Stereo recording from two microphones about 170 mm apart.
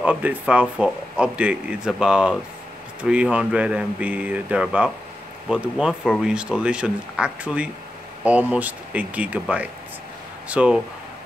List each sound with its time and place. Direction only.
0.0 s speech: 10° right (ahead or behind)